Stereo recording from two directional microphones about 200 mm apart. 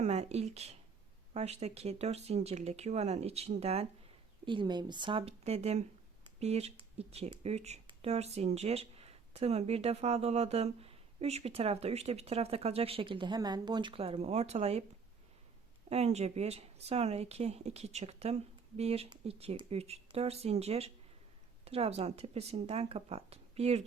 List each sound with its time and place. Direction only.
0.0 s speech: 35° right (ahead or behind)
15.9 s speech: 35° right (ahead or behind)